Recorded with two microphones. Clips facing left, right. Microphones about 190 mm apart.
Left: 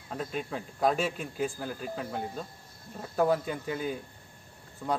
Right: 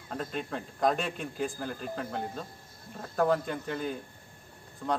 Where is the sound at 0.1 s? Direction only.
5° left (ahead or behind).